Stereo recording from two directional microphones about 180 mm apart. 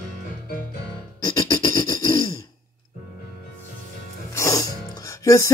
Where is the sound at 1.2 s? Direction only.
20° left (ahead or behind).